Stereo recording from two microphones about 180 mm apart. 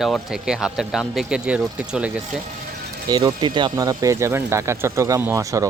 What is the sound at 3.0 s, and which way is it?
Speech, 25° right (ahead or behind).